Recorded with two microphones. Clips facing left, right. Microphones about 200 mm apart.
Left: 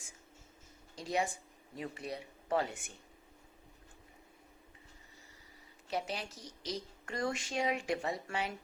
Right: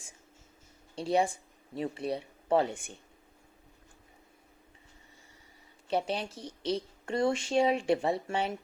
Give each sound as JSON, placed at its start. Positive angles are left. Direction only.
{"t": 1.0, "sound": "speech", "side_deg": -30}
{"t": 5.9, "sound": "a woman's voice", "side_deg": -30}